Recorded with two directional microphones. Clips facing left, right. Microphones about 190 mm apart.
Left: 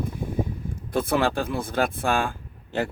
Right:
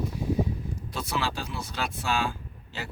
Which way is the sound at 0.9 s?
55° left (ahead or behind).